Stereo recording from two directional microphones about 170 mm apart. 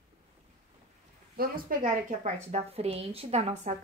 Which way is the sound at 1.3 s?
60° right (ahead or behind).